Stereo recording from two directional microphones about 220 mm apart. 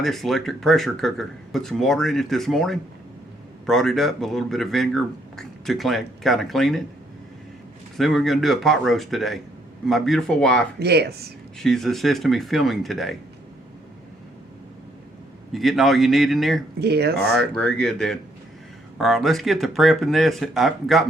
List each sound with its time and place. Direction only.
0.0 s speech: centre (ahead or behind)
7.9 s speech: centre (ahead or behind)
10.8 s speech: 45° right (ahead or behind)
11.6 s speech: centre (ahead or behind)
15.5 s speech: centre (ahead or behind)
16.8 s speech: 45° right (ahead or behind)
17.2 s speech: centre (ahead or behind)